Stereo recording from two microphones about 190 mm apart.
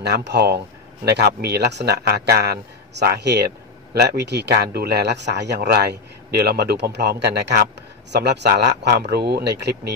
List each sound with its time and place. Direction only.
0.0 s speech: 60° right (ahead or behind)